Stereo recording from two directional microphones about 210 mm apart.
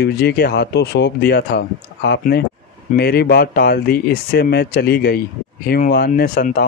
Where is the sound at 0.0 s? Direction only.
50° left (ahead or behind).